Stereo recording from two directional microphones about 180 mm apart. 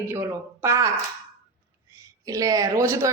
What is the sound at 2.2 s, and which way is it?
Speech, 20° right (ahead or behind).